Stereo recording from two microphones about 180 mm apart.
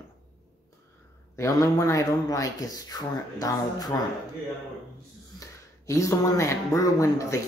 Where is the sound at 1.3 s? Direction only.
20° left (ahead or behind).